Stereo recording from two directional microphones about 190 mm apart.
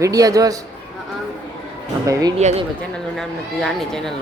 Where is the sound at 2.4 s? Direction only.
35° right (ahead or behind).